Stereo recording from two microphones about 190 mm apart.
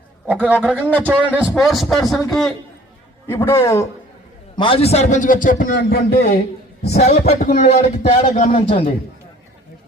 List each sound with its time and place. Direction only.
0.3 s a man's voice: 10° right (ahead or behind)
0.8 s a man's voice: 10° left (ahead or behind)
1.0 s speech: 10° right (ahead or behind)
3.2 s a man's voice: 15° left (ahead or behind)
4.5 s a man's voice: 25° left (ahead or behind); by 6.4 s 55° left (ahead or behind)
6.8 s a man's voice: 35° left (ahead or behind)